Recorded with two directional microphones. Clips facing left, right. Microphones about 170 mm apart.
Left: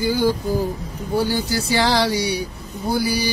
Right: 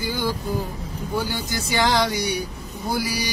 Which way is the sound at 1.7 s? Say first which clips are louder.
Left 1 dB; 35° left (ahead or behind).